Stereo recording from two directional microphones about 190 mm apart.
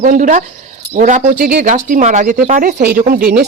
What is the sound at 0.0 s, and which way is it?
Speech, 45° right (ahead or behind).